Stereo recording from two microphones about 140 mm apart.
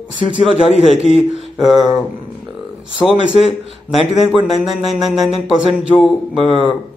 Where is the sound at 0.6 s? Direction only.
50° left (ahead or behind).